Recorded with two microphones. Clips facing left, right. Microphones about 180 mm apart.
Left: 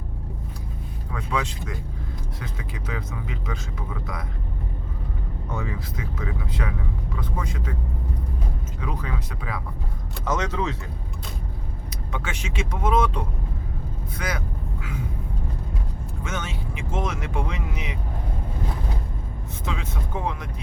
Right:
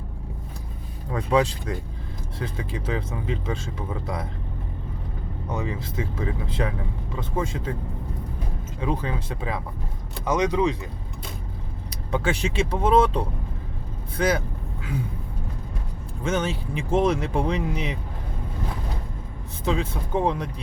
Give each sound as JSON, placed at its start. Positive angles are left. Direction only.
{"t": 1.1, "sound": "speech", "side_deg": -35}
{"t": 5.5, "sound": "speech", "side_deg": -20}
{"t": 8.8, "sound": "speech", "side_deg": -30}
{"t": 10.2, "sound": "speech", "side_deg": -15}
{"t": 11.9, "sound": "speech", "side_deg": -35}
{"t": 14.2, "sound": "vehicle", "side_deg": -30}
{"t": 16.2, "sound": "speech", "side_deg": -30}
{"t": 19.6, "sound": "speech", "side_deg": -35}